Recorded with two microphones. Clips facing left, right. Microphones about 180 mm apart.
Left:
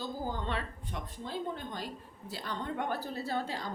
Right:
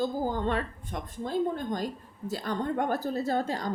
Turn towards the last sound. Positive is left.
turn(degrees=-45)  # may be behind; listen again after turning